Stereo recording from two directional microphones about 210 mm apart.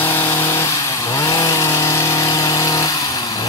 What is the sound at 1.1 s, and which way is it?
Chainsaw, 15° left (ahead or behind).